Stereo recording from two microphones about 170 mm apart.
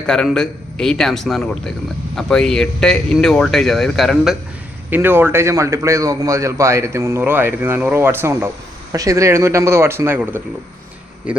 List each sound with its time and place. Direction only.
0.0 s speech: 5° left (ahead or behind)
4.9 s a man's voice: 10° right (ahead or behind)